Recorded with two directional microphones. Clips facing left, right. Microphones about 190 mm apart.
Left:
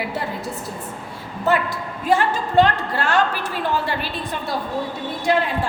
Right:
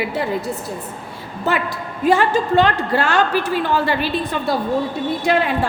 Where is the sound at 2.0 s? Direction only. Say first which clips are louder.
Right 4 dB; 80° right.